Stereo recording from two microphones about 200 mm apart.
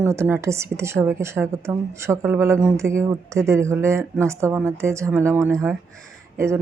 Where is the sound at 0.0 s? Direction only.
10° right (ahead or behind).